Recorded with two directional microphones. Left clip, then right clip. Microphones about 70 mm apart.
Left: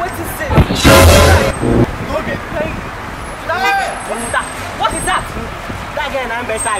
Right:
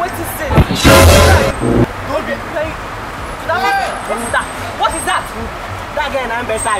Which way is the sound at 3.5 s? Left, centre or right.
Left.